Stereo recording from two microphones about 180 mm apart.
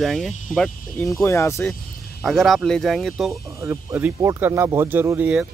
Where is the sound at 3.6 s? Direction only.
15° right (ahead or behind).